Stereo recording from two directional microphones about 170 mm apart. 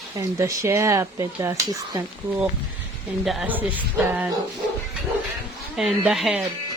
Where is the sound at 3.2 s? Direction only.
Centre (ahead or behind).